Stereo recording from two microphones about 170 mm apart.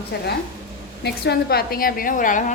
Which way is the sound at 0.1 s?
75° left (ahead or behind).